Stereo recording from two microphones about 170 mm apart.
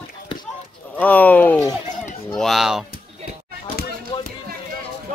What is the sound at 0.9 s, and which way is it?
Speech, 10° left (ahead or behind).